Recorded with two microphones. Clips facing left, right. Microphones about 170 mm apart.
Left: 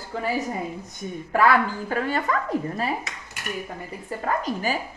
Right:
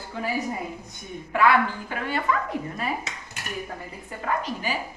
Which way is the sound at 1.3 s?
40° left (ahead or behind).